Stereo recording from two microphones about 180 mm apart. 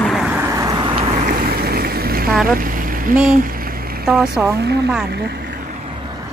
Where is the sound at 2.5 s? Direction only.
50° right (ahead or behind).